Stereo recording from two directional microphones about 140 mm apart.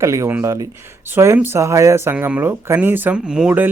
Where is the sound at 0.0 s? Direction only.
20° right (ahead or behind).